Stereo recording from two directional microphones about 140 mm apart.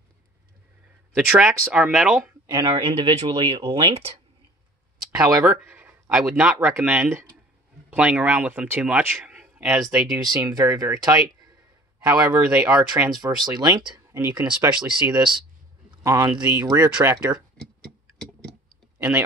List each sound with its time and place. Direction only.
1.1 s speech: 10° right (ahead or behind)
2.4 s speech: 25° right (ahead or behind)
2.7 s speech: 40° right (ahead or behind)
5.4 s speech: 10° right (ahead or behind)
10.5 s speech: 25° right (ahead or behind); by 13.1 s 10° right (ahead or behind)
13.1 s speech: 30° right (ahead or behind)
14.4 s speech: 10° right (ahead or behind)
15.1 s speech: 35° right (ahead or behind)
16.0 s speech: 25° right (ahead or behind)
18.9 s speech: 15° right (ahead or behind)